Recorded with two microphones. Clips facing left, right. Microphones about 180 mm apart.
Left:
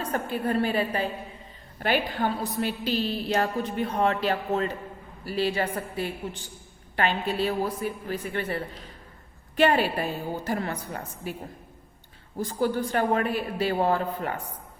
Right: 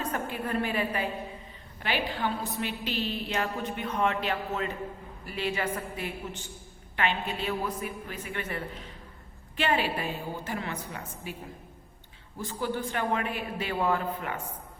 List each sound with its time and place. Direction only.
0.1 s a woman's voice: 35° left (ahead or behind)
1.8 s a woman's voice: 45° left (ahead or behind)
12.4 s a woman's voice: 40° left (ahead or behind)